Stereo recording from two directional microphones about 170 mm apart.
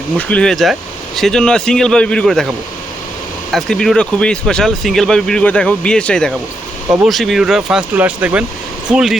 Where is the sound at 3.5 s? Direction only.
Centre (ahead or behind).